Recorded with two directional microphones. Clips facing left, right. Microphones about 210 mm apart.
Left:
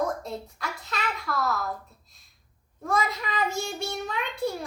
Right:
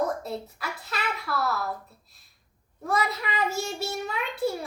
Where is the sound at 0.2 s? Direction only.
5° right (ahead or behind).